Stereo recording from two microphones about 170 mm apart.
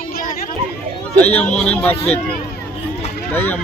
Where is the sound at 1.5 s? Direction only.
5° left (ahead or behind).